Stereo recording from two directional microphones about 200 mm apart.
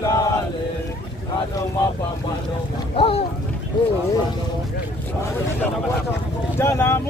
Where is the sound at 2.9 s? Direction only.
25° left (ahead or behind).